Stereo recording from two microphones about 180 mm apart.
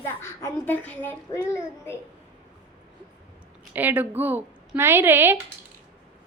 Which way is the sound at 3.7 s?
10° right (ahead or behind).